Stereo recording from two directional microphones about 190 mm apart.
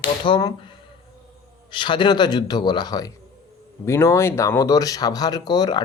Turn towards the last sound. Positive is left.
turn(degrees=20)  # may be behind; listen again after turning